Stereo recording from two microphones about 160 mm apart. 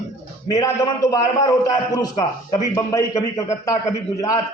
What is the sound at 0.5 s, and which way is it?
A man's voice, 25° left (ahead or behind).